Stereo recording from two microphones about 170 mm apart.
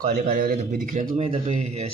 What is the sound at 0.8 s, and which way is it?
Speech, 50° right (ahead or behind).